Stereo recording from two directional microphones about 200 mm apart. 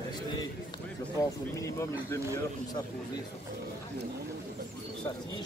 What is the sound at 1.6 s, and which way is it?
Speech, 15° left (ahead or behind).